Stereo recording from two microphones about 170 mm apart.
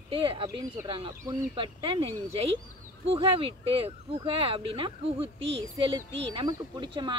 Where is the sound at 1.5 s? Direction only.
30° right (ahead or behind).